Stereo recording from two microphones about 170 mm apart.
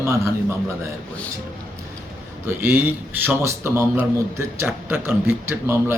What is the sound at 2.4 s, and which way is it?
A man's voice, 15° right (ahead or behind).